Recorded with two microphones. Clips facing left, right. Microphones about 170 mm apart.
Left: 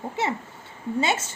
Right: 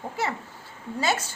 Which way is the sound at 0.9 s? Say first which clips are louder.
Left 1 dB; 25° left (ahead or behind).